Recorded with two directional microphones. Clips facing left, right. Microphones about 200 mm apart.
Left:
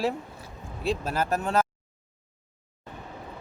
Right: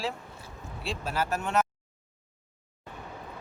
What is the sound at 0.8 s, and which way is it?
Speech, 40° left (ahead or behind).